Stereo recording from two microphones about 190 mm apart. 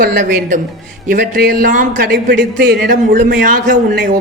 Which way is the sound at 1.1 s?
50° right (ahead or behind).